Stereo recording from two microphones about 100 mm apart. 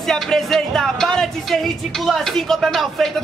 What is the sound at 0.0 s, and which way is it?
Speech, 5° left (ahead or behind).